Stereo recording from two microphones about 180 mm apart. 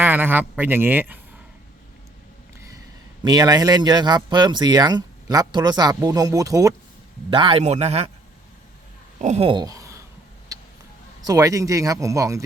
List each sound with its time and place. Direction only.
0.0 s speech: 10° right (ahead or behind)
3.2 s speech: 20° right (ahead or behind)
7.3 s a man's voice: 30° right (ahead or behind)
9.2 s speech: 35° right (ahead or behind); by 10.0 s 20° right (ahead or behind)
10.5 s a sound: 20° right (ahead or behind)
11.2 s speech: 20° right (ahead or behind)